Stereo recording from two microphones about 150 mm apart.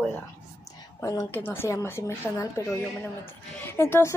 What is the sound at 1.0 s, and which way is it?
A woman's voice, 20° left (ahead or behind).